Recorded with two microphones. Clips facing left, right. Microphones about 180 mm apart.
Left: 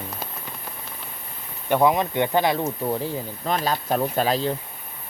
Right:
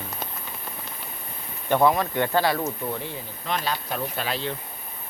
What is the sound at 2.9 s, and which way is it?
Speech, 40° left (ahead or behind).